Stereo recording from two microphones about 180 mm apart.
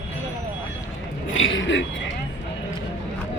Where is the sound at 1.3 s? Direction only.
90° left.